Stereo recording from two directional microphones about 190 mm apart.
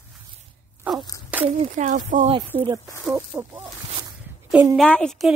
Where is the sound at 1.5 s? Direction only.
40° right (ahead or behind).